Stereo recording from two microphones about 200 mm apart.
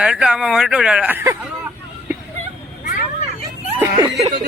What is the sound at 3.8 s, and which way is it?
Chuckle, 20° right (ahead or behind).